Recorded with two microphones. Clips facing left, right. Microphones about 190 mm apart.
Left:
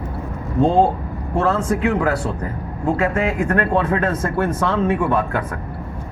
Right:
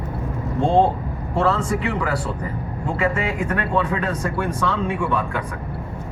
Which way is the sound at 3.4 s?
45° left (ahead or behind).